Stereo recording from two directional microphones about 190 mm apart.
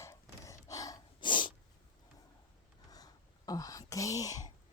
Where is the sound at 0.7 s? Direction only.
15° left (ahead or behind).